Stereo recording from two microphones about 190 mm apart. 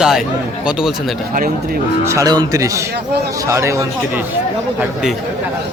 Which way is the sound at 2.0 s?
20° right (ahead or behind).